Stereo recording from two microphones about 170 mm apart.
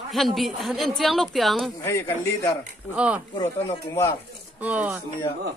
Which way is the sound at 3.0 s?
5° right (ahead or behind).